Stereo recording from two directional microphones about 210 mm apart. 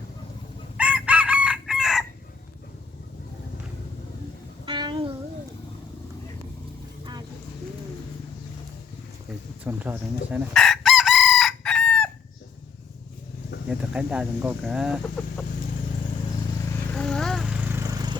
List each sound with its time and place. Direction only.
0.8 s chicken: 5° right (ahead or behind)
4.6 s a sound: 20° right (ahead or behind)
7.0 s vehicle: 20° right (ahead or behind)
9.7 s speech: 5° right (ahead or behind)
10.5 s chicken: centre (ahead or behind)
13.7 s speech: 5° right (ahead or behind)
16.9 s vehicle: 5° left (ahead or behind); by 18.2 s 15° right (ahead or behind)